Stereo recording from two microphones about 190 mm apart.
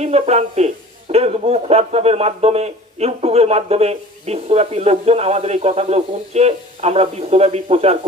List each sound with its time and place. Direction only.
0.0 s speech: 35° right (ahead or behind)